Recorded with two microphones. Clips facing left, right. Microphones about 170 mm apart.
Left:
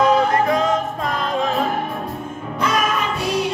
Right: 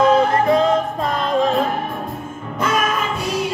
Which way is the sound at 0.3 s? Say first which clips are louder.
Right 2 dB; 30° right (ahead or behind).